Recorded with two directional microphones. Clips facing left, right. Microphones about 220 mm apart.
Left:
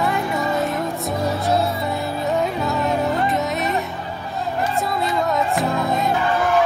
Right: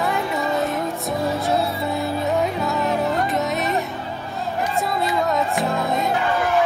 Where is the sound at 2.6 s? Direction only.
Centre (ahead or behind).